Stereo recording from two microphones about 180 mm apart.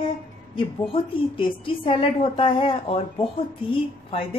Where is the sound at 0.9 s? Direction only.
30° left (ahead or behind).